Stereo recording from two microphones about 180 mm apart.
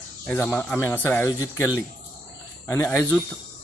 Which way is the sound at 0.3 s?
10° left (ahead or behind).